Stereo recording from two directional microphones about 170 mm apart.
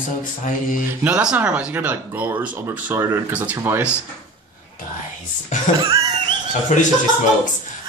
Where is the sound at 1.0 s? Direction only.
5° right (ahead or behind).